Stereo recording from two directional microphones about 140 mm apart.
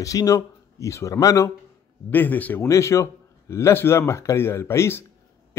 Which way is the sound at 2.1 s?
15° left (ahead or behind).